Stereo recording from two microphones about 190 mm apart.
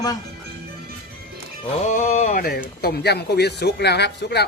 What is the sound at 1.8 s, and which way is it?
Speech, 40° left (ahead or behind).